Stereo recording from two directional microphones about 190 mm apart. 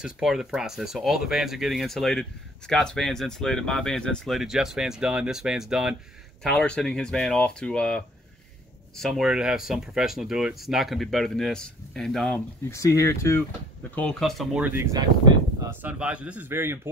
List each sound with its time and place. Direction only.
0.0 s speech: centre (ahead or behind)
12.6 s speech: 15° left (ahead or behind)
13.9 s speech: 5° left (ahead or behind); by 16.9 s 10° right (ahead or behind)